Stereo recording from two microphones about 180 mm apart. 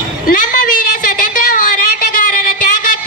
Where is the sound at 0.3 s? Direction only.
50° left (ahead or behind).